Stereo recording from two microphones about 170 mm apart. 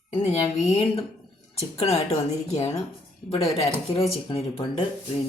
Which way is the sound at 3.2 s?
35° left (ahead or behind).